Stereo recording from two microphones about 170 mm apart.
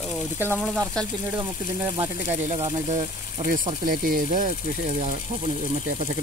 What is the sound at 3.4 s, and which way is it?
Speech, 50° right (ahead or behind).